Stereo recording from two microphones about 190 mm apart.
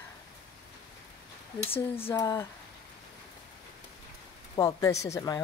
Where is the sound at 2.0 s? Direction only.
15° left (ahead or behind).